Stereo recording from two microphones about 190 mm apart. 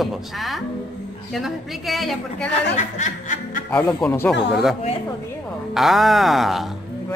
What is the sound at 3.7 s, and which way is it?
Speech, 5° left (ahead or behind).